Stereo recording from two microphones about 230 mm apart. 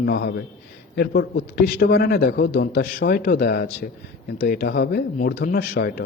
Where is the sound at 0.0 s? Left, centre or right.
Left.